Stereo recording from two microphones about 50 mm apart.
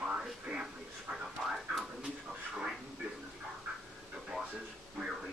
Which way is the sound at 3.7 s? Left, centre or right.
Right.